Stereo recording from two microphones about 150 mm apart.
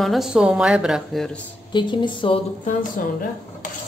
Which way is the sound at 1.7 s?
30° left (ahead or behind).